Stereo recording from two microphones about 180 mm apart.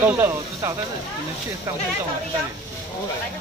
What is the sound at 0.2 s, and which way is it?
Speech, 15° right (ahead or behind).